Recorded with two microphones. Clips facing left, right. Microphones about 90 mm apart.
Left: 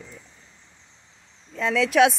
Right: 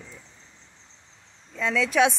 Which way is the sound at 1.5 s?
10° left (ahead or behind).